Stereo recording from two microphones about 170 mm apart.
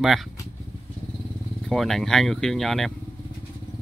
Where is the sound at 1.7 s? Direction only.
Centre (ahead or behind).